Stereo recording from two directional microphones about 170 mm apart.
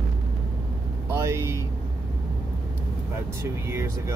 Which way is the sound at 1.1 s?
15° right (ahead or behind).